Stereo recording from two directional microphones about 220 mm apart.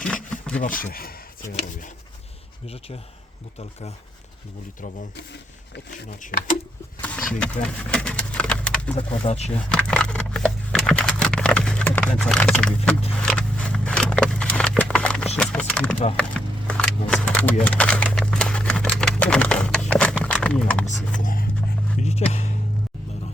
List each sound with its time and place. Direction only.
0.6 s speech: 35° left (ahead or behind)
2.6 s speech: 25° left (ahead or behind)
6.2 s speech: 35° left (ahead or behind)
7.6 s pigeon: 5° left (ahead or behind)
9.0 s speech: 30° left (ahead or behind)
9.6 s a sound: 5° left (ahead or behind)
15.4 s speech: 5° left (ahead or behind)
16.1 s a sound: 5° left (ahead or behind)
21.2 s music: 40° left (ahead or behind)
22.1 s music: 30° left (ahead or behind)